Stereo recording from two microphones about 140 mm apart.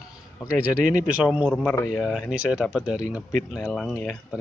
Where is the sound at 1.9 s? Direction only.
Centre (ahead or behind).